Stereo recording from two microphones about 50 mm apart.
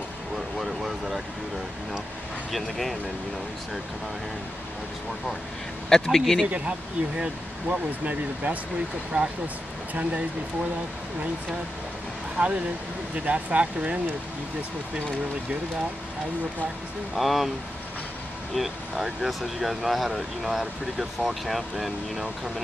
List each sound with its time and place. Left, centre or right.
0.6 s vehicle: centre
2.5 s speech: centre
5.9 s speech: centre
6.4 s speech: right
12.4 s speech: right
17.2 s speech: centre
18.5 s speech: centre